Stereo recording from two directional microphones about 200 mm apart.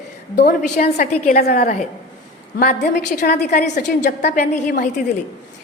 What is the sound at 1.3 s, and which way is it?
A woman's voice, 50° left (ahead or behind).